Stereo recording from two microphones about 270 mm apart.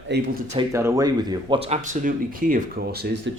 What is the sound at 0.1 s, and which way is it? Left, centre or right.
Speech, right.